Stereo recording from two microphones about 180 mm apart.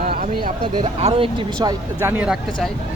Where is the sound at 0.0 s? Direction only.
50° right (ahead or behind).